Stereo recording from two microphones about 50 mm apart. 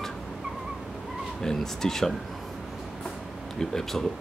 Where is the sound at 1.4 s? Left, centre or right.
Centre.